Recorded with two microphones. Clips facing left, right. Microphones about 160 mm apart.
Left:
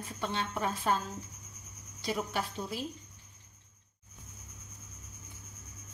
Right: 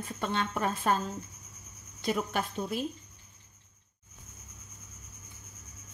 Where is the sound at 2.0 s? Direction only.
55° right (ahead or behind).